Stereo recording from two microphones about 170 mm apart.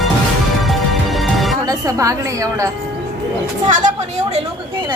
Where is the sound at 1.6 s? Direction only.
20° right (ahead or behind).